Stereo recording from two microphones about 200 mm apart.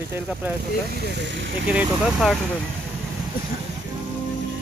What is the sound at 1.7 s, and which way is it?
Speech, 5° right (ahead or behind).